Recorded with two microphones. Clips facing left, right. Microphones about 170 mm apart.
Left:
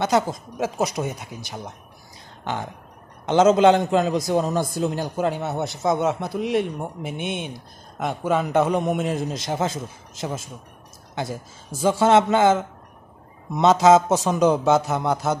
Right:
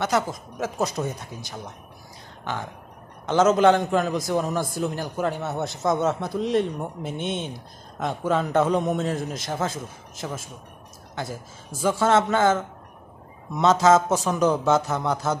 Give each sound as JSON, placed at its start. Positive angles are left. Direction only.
{"t": 0.0, "sound": "a man's voice", "side_deg": 25}
{"t": 3.3, "sound": "a man's voice", "side_deg": 25}
{"t": 11.8, "sound": "a man's voice", "side_deg": 20}